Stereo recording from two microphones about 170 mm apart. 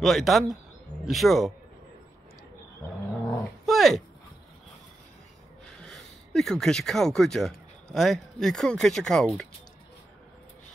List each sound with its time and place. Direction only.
0.0 s speech: centre (ahead or behind)
3.6 s a sound: centre (ahead or behind)
5.7 s speech: 5° left (ahead or behind)